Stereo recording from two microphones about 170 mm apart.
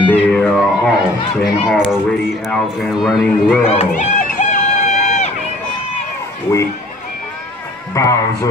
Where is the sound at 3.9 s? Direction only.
45° left (ahead or behind).